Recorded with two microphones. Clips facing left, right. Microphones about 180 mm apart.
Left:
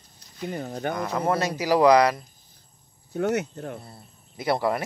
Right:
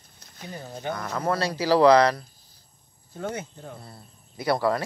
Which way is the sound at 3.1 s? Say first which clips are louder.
Left 8 dB; 70° left (ahead or behind).